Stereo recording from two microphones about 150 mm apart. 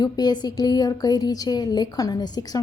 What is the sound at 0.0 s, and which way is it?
A woman's voice, 25° left (ahead or behind).